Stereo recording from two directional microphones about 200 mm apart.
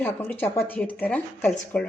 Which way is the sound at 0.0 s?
10° left (ahead or behind).